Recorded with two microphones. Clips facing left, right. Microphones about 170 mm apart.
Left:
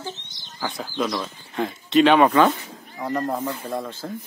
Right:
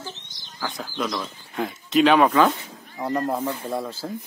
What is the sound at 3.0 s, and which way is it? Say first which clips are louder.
Speech: right 1 dB; 10° right (ahead or behind).